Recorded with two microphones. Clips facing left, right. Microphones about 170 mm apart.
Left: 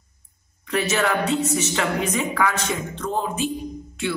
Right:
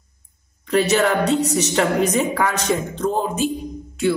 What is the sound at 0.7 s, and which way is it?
A man's voice, 35° right (ahead or behind).